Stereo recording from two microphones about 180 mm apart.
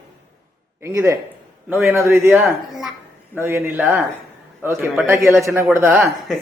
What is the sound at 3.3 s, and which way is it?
A man's voice, 15° right (ahead or behind).